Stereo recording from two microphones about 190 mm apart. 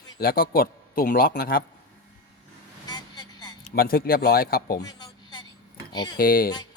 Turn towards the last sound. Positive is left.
turn(degrees=50)  # may be behind; listen again after turning